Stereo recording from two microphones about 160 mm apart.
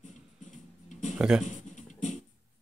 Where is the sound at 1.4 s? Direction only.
50° left (ahead or behind).